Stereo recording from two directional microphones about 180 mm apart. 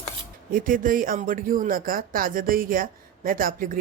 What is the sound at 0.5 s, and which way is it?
Speech, 50° right (ahead or behind).